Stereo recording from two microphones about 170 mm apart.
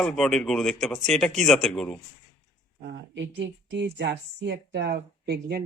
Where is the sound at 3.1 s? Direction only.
90° right; by 5.6 s 70° right (ahead or behind).